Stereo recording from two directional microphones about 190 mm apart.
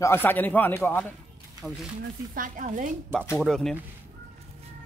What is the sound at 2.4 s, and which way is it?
Speech, 45° right (ahead or behind).